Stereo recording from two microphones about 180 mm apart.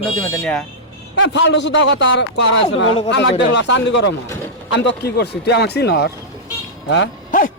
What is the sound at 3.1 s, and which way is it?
A man's voice, 80° left.